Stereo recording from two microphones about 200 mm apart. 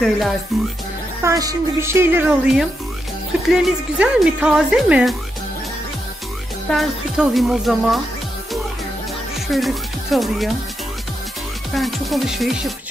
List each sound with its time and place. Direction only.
0.5 s speech: centre (ahead or behind)
1.2 s speech: 15° right (ahead or behind)
6.7 s speech: centre (ahead or behind)
9.5 s speech: centre (ahead or behind)
11.7 s speech: centre (ahead or behind)